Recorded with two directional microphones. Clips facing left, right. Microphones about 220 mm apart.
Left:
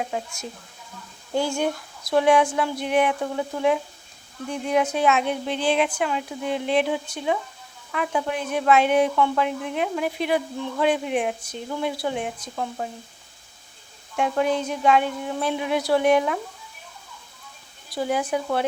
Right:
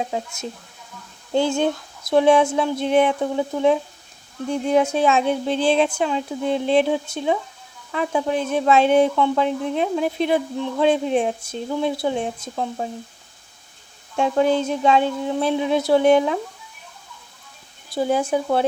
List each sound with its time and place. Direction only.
0.1 s speech: 20° right (ahead or behind)
9.5 s speech: 30° right (ahead or behind)
14.2 s speech: 30° right (ahead or behind)
17.9 s speech: 25° right (ahead or behind)